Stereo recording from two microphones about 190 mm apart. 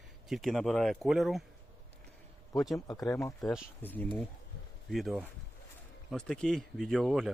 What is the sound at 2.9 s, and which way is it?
Speech, 20° left (ahead or behind).